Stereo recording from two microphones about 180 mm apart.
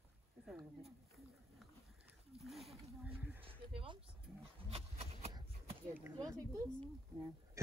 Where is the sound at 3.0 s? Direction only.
10° right (ahead or behind).